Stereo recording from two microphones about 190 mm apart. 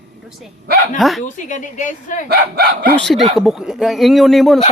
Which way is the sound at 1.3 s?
40° left (ahead or behind).